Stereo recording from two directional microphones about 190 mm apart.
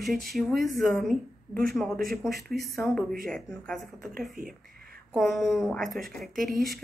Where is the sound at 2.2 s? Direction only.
Centre (ahead or behind).